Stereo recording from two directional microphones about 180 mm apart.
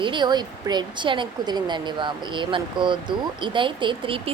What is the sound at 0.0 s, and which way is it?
Speech, 25° right (ahead or behind).